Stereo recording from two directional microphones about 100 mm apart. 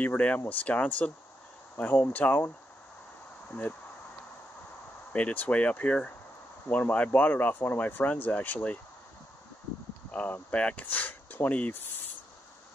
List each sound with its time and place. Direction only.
0.0 s speech: 15° left (ahead or behind)
5.1 s speech: 15° left (ahead or behind)
10.1 s speech: 15° left (ahead or behind)